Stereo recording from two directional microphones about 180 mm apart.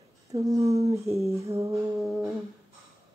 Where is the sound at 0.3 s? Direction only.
20° right (ahead or behind).